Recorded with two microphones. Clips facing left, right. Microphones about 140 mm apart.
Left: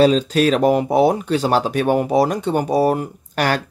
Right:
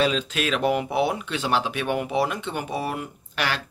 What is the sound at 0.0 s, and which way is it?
Speech, 35° left (ahead or behind).